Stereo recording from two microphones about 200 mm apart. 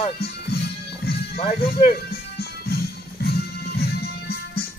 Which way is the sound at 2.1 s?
50° left (ahead or behind).